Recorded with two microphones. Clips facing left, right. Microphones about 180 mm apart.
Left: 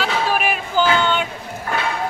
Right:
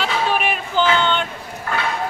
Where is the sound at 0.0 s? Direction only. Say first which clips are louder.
Even; 5° left (ahead or behind).